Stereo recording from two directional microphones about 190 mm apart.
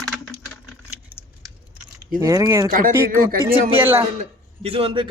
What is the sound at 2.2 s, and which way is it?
Speech, 20° right (ahead or behind).